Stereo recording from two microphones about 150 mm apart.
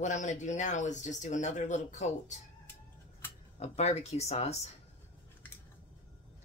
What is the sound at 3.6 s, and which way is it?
Speech, 45° left (ahead or behind).